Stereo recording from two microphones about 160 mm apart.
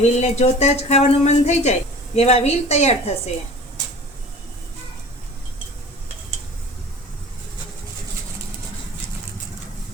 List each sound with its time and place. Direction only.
0.0 s speech: 45° left (ahead or behind)